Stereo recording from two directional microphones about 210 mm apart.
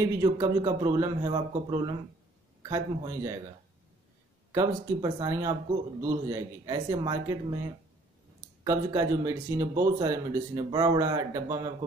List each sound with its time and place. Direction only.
0.0 s speech: 15° right (ahead or behind)
4.5 s speech: 15° right (ahead or behind)
8.6 s speech: 15° right (ahead or behind)